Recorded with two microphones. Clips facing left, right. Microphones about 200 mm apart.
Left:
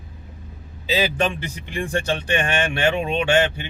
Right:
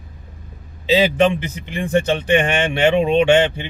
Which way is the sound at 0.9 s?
20° right (ahead or behind).